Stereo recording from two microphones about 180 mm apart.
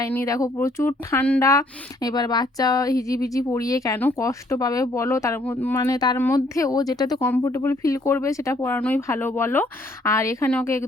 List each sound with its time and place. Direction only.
0.0 s speech: 15° left (ahead or behind)